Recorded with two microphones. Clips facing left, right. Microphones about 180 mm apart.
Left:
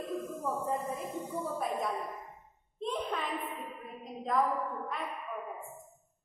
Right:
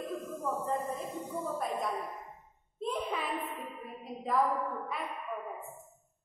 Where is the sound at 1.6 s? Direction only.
Centre (ahead or behind).